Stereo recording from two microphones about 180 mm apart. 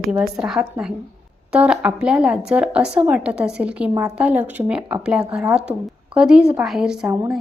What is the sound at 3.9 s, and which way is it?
A woman's voice, 15° right (ahead or behind).